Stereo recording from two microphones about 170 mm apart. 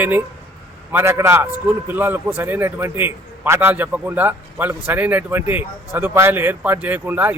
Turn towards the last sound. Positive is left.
turn(degrees=-10)  # may be behind; listen again after turning